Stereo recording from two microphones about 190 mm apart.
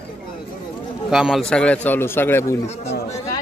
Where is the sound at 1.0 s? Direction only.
5° right (ahead or behind); by 2.5 s 10° left (ahead or behind).